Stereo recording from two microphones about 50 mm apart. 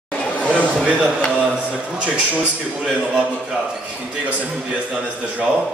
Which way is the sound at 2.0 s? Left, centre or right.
Right.